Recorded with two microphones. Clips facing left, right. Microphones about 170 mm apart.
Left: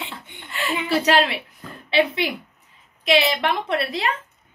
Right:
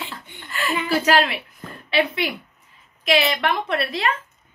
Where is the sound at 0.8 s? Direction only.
25° left (ahead or behind).